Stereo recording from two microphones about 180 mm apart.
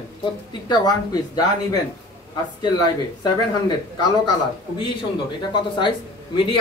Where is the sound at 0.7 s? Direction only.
20° left (ahead or behind).